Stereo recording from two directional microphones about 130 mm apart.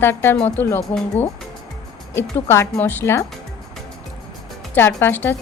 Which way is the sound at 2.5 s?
20° left (ahead or behind).